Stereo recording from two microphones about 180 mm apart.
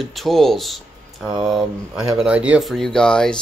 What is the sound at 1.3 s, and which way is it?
Speech, 25° right (ahead or behind).